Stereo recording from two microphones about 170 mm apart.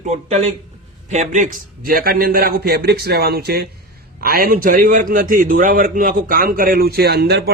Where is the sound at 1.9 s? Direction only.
60° right (ahead or behind).